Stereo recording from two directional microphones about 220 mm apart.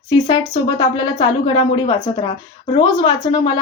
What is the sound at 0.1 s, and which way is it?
A woman's voice, 20° left (ahead or behind).